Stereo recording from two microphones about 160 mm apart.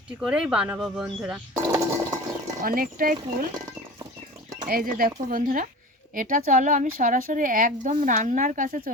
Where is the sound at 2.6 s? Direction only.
65° right (ahead or behind).